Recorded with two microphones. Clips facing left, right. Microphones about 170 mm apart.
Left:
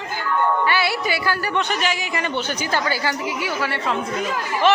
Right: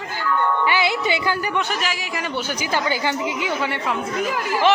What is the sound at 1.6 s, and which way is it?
Speech, 5° right (ahead or behind).